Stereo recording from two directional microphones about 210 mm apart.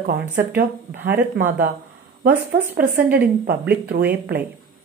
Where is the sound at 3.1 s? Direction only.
50° right (ahead or behind).